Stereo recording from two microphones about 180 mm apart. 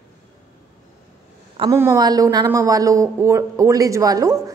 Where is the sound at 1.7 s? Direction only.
15° right (ahead or behind).